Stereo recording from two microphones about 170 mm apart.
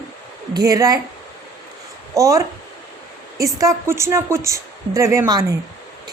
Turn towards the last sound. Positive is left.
turn(degrees=-20)  # may be behind; listen again after turning